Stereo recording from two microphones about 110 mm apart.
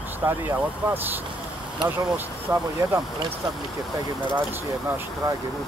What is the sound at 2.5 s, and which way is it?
Speech, 20° right (ahead or behind).